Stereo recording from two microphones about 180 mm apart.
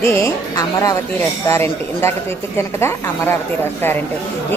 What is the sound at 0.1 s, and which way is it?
A woman's voice, 15° left (ahead or behind).